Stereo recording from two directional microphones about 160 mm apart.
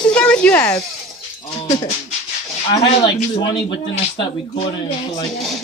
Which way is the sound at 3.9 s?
40° left (ahead or behind).